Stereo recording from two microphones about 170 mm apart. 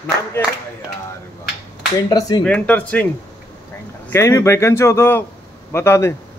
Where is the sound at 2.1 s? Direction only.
20° left (ahead or behind).